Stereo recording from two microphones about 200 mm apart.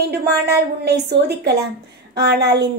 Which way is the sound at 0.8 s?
55° right (ahead or behind).